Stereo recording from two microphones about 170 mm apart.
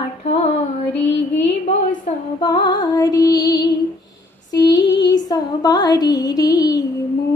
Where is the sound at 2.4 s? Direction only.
25° left (ahead or behind).